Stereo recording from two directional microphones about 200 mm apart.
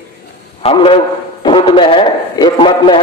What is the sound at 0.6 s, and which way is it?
A man's voice, 30° left (ahead or behind).